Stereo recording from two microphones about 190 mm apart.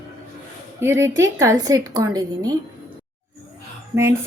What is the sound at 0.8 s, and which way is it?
A woman's voice, 15° right (ahead or behind).